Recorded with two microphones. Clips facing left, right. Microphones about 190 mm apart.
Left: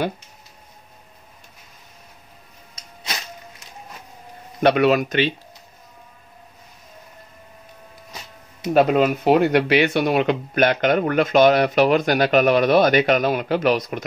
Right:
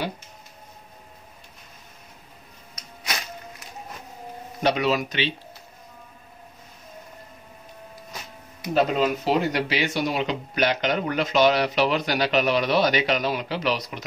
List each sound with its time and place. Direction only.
4.6 s speech: 60° left (ahead or behind)
8.7 s speech: 55° left (ahead or behind)